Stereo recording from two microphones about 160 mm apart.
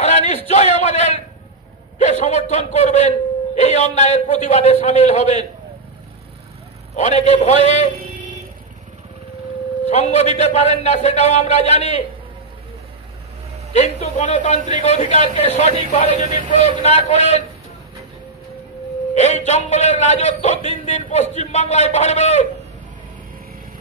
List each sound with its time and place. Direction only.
0.0 s a sound: 45° left (ahead or behind)
2.0 s a man's voice: 45° left (ahead or behind)
7.0 s a man's voice: 45° left (ahead or behind)
9.8 s a man's voice: 45° left (ahead or behind)
13.7 s a man's voice: 45° left (ahead or behind)
19.1 s a man's voice: 45° left (ahead or behind)